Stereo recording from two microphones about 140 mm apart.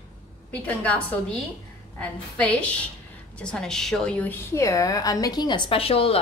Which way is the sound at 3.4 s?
5° left (ahead or behind).